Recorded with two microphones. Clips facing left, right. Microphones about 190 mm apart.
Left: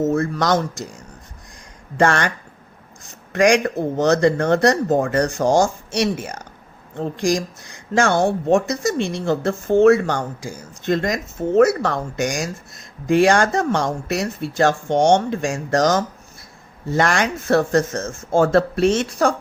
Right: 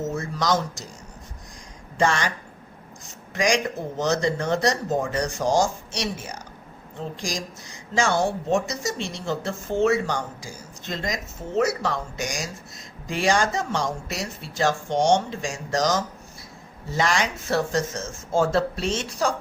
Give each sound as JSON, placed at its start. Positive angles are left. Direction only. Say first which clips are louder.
{"t": 0.1, "sound": "speech", "louder": "left 6 dB", "side_deg": 60}
{"t": 2.0, "sound": "speech", "louder": "left 5 dB", "side_deg": 60}
{"t": 3.3, "sound": "speech", "louder": "left 7 dB", "side_deg": 60}